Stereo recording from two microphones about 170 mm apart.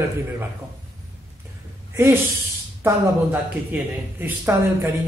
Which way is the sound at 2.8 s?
15° right (ahead or behind).